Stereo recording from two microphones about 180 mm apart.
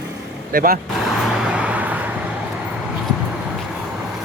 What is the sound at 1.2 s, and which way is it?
Vehicle, 5° right (ahead or behind).